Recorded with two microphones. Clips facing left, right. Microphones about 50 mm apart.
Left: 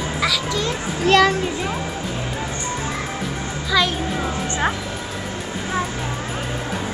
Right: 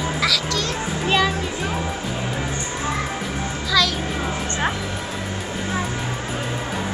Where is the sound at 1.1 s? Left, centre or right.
Left.